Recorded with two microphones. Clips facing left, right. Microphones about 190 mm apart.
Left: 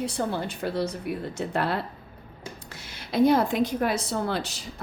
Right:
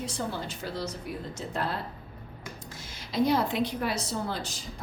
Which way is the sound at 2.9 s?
55° left (ahead or behind).